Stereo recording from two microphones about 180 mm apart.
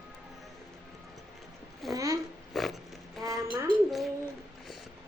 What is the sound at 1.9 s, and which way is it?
Speech, 20° right (ahead or behind).